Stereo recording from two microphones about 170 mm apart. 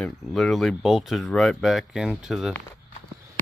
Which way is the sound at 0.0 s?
Centre (ahead or behind).